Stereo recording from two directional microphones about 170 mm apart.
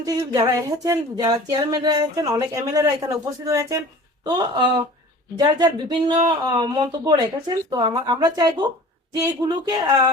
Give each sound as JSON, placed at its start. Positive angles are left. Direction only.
{"t": 0.0, "sound": "speech", "side_deg": -20}